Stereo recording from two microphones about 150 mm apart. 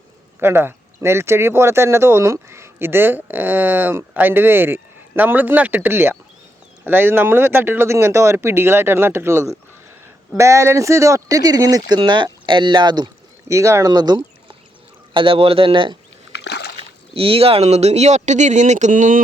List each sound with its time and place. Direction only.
0.3 s speech: 15° right (ahead or behind); by 16.0 s 35° right (ahead or behind)
17.2 s speech: 40° right (ahead or behind); by 19.2 s 60° right (ahead or behind)